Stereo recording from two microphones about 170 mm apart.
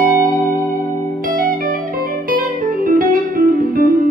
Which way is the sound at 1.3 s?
55° right (ahead or behind).